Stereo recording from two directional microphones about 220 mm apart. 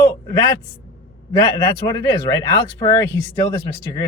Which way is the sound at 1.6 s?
15° left (ahead or behind).